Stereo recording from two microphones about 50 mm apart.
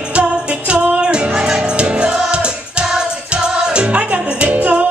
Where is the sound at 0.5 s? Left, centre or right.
Right.